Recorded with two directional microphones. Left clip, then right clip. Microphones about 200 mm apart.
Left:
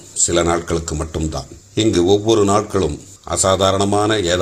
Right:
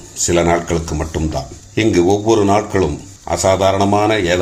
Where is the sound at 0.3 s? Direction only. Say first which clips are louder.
Right 3 dB; 30° left (ahead or behind).